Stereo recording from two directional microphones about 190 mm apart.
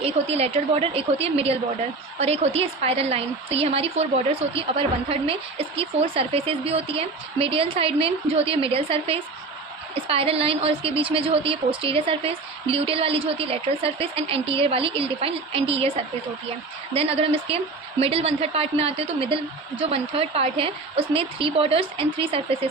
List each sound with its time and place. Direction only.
0.0 s a woman's voice: 30° right (ahead or behind)
16.9 s a woman's voice: 30° right (ahead or behind)